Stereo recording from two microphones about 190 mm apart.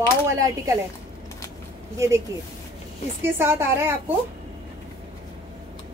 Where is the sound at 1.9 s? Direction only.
15° right (ahead or behind).